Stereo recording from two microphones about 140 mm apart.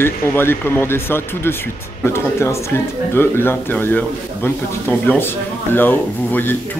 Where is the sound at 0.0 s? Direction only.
15° left (ahead or behind).